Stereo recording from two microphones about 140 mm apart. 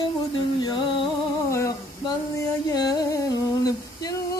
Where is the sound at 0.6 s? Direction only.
30° left (ahead or behind).